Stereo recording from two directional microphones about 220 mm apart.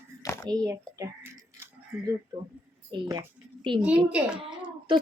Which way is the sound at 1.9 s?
Centre (ahead or behind).